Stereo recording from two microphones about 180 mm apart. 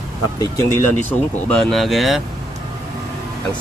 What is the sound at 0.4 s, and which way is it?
Speech, 15° left (ahead or behind).